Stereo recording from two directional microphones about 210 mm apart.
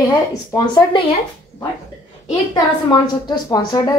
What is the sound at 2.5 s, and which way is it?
A woman's voice, 20° left (ahead or behind).